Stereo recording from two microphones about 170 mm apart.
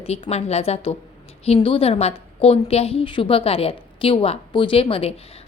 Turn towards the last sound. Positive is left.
turn(degrees=35)  # may be behind; listen again after turning